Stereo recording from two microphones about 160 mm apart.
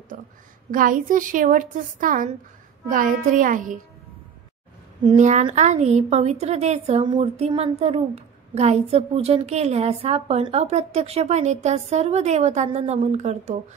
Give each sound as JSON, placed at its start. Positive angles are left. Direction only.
{"t": 0.7, "sound": "a woman's voice", "side_deg": -60}
{"t": 5.1, "sound": "a woman's voice", "side_deg": -50}